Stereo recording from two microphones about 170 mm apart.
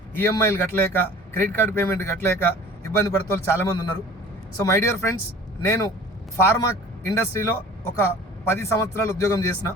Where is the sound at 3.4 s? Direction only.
15° left (ahead or behind).